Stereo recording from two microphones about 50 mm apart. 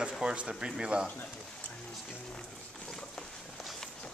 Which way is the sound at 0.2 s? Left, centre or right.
Centre.